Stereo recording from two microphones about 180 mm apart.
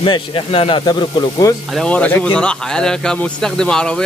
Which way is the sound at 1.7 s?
5° left (ahead or behind).